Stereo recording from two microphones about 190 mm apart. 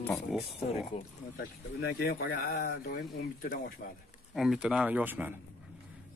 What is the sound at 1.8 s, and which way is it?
Speech, 55° left (ahead or behind).